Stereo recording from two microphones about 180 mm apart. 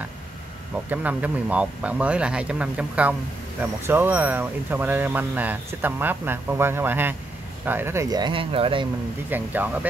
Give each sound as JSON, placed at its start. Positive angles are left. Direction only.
{"t": 0.8, "sound": "speech", "side_deg": -10}
{"t": 9.3, "sound": "speech", "side_deg": -10}